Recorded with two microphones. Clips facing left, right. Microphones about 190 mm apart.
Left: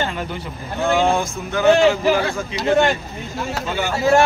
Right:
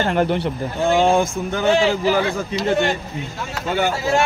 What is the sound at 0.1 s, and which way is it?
Speech, 70° right (ahead or behind).